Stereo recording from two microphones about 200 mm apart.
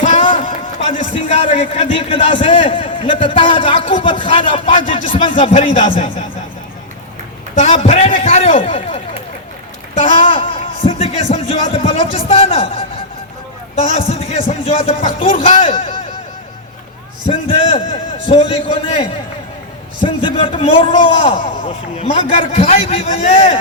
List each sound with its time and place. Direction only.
0.0 s a sound: 35° left (ahead or behind)
0.4 s a man's voice: 30° left (ahead or behind)
7.6 s a man's voice: 30° left (ahead or behind)
10.0 s speech: 25° left (ahead or behind)
13.9 s a man's voice: 30° left (ahead or behind)
17.2 s a sound: 25° left (ahead or behind)
18.3 s a man's voice: 30° left (ahead or behind)